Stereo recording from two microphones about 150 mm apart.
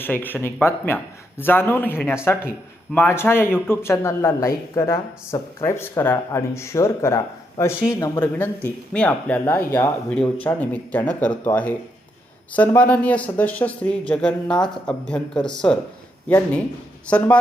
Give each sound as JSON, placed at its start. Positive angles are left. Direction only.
{"t": 0.0, "sound": "speech", "side_deg": 10}
{"t": 17.1, "sound": "speech", "side_deg": 10}